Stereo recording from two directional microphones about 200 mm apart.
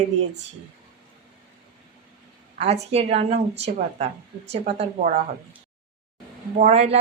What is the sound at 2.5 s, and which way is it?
Speech, 30° right (ahead or behind).